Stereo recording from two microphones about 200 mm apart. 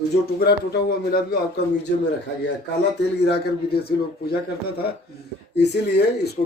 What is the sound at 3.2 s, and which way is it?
A man's voice, 55° left (ahead or behind).